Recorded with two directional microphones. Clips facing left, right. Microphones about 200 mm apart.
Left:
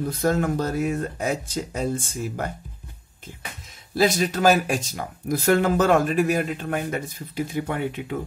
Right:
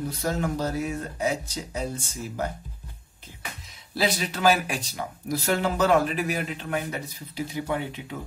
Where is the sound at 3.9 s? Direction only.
45° left (ahead or behind).